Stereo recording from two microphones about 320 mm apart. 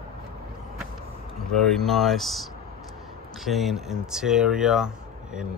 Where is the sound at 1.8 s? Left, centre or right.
Centre.